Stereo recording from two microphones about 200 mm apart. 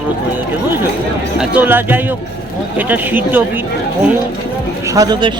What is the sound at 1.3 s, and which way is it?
Speech, 10° right (ahead or behind).